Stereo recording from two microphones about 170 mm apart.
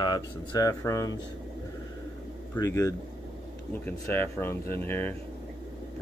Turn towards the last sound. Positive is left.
turn(degrees=10)  # may be behind; listen again after turning